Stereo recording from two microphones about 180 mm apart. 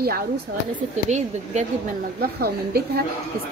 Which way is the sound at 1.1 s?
40° right (ahead or behind).